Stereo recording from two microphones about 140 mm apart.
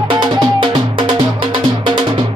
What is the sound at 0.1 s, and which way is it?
Music, 30° right (ahead or behind).